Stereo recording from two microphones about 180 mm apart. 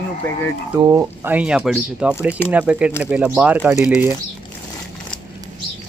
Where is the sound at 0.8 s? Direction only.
20° right (ahead or behind).